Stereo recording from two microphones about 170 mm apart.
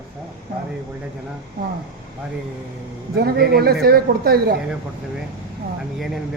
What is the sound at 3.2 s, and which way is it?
A woman's voice, 65° right (ahead or behind).